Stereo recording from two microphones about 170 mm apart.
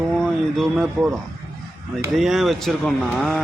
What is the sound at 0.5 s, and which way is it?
Speech, centre (ahead or behind).